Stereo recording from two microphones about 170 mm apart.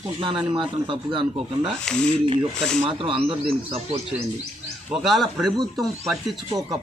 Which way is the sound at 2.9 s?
30° right (ahead or behind).